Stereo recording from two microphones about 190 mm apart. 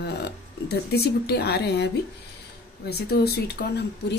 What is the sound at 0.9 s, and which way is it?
Speech, 55° left (ahead or behind).